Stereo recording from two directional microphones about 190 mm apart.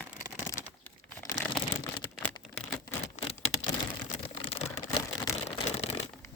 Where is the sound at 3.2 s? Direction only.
40° left (ahead or behind).